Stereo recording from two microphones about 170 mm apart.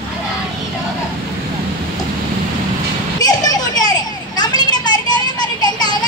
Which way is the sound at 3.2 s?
25° left (ahead or behind).